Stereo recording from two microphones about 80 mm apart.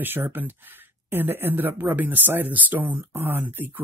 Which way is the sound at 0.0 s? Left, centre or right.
Right.